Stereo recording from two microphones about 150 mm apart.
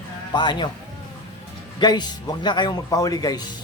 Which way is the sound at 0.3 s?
30° left (ahead or behind).